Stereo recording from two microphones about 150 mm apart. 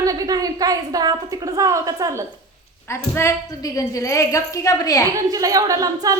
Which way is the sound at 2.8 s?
15° left (ahead or behind).